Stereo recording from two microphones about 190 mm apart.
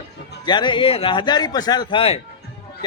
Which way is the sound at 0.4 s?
25° left (ahead or behind).